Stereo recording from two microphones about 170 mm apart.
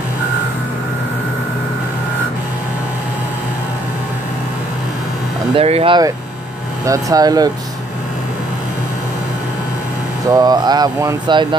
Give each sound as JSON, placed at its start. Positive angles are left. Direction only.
{"t": 5.6, "sound": "speech", "side_deg": -35}
{"t": 10.3, "sound": "speech", "side_deg": -25}